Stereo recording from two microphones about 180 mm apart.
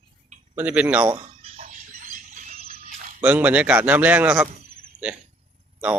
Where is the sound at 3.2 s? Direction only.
10° right (ahead or behind).